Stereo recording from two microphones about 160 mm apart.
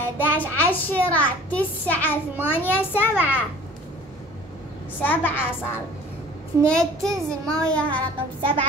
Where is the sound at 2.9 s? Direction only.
10° right (ahead or behind).